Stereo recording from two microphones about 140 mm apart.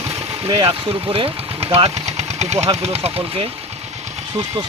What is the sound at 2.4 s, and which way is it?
Speech, 50° right (ahead or behind).